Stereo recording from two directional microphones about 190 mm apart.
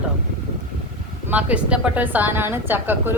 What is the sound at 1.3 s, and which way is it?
A woman's voice, 5° right (ahead or behind).